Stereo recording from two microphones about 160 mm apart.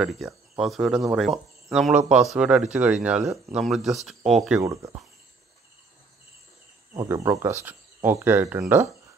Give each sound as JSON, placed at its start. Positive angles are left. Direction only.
{"t": 0.0, "sound": "speech", "side_deg": 0}
{"t": 4.6, "sound": "speech", "side_deg": -20}
{"t": 6.9, "sound": "speech", "side_deg": -20}